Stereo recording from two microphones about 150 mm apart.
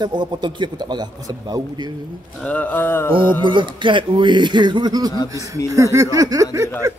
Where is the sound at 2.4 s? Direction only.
10° left (ahead or behind).